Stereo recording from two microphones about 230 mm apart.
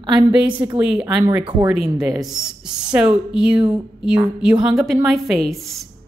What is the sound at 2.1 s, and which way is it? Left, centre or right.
A woman's voice, centre.